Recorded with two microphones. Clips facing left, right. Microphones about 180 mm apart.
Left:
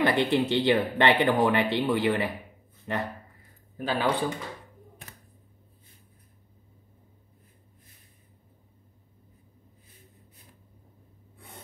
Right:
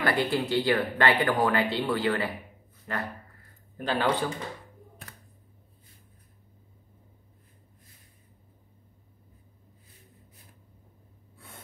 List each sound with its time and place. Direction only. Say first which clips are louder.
0.0 s speech: left 3 dB; 20° left (ahead or behind)
3.7 s speech: even; 5° left (ahead or behind)